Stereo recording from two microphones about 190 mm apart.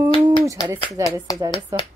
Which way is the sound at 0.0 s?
25° right (ahead or behind).